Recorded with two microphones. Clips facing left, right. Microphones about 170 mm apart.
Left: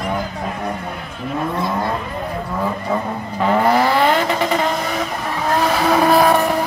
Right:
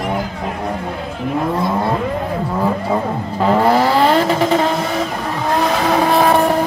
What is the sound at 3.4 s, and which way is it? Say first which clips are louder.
Vehicle: right 2 dB; 30° right (ahead or behind).